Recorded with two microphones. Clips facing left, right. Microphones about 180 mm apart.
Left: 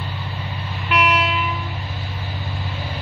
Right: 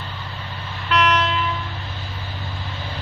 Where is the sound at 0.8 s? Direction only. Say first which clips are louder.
Right 1 dB; 10° left (ahead or behind).